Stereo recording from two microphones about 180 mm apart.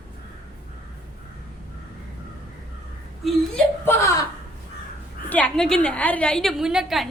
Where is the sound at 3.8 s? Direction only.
20° left (ahead or behind).